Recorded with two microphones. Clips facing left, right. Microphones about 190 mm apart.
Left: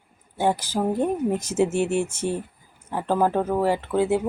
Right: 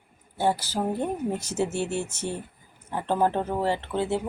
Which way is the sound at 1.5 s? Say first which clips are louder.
Left 6 dB; 90° left.